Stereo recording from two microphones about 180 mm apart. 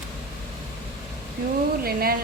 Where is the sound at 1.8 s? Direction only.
55° right (ahead or behind).